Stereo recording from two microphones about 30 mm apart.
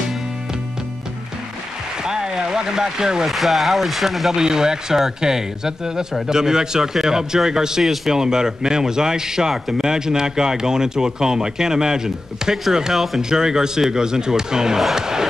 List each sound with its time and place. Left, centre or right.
2.0 s a sound: right
3.3 s speech: centre
4.3 s a man's voice: right
7.8 s speech: centre
8.1 s a man's voice: right
12.9 s speech: centre
13.3 s a man's voice: right
15.0 s crowd: right